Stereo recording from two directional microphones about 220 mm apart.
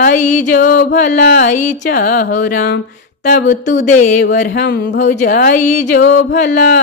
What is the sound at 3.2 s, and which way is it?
Speech, 45° left (ahead or behind).